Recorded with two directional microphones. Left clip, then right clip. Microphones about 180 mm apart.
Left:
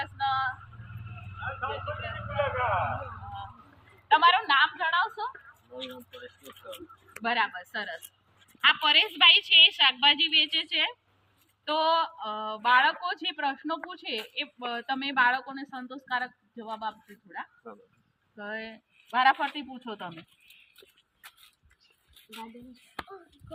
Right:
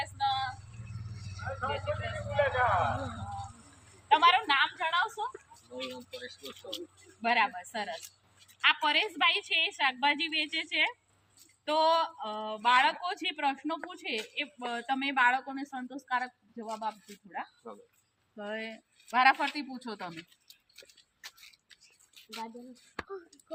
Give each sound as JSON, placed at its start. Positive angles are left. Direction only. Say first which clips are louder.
{"t": 0.0, "sound": "synthetic singing", "louder": "left 3 dB", "side_deg": -25}
{"t": 2.4, "sound": "a sound", "louder": "right 1 dB", "side_deg": 45}
{"t": 4.1, "sound": "a sound", "louder": "left 3 dB", "side_deg": -20}
{"t": 7.2, "sound": "a woman's voice", "louder": "even", "side_deg": -25}
{"t": 16.6, "sound": "a woman's voice", "louder": "left 1 dB", "side_deg": -5}
{"t": 18.3, "sound": "a woman's voice", "louder": "left 1 dB", "side_deg": -20}
{"t": 19.1, "sound": "a woman's voice", "louder": "left 1 dB", "side_deg": -10}
{"t": 19.7, "sound": "speech", "louder": "left 2 dB", "side_deg": 15}